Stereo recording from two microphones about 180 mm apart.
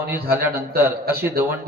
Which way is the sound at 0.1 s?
10° right (ahead or behind).